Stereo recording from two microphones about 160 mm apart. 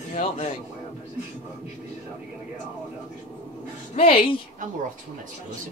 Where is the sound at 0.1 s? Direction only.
40° left (ahead or behind).